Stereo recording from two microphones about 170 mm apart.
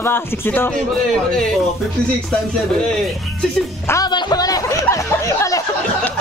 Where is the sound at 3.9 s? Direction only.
25° left (ahead or behind).